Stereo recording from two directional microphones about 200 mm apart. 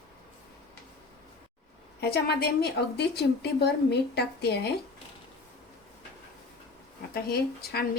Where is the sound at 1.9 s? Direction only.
55° left (ahead or behind).